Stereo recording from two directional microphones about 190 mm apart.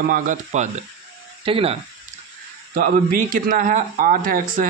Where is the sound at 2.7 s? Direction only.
50° right (ahead or behind).